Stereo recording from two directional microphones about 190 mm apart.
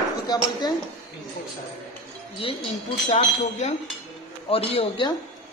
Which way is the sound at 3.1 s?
35° left (ahead or behind).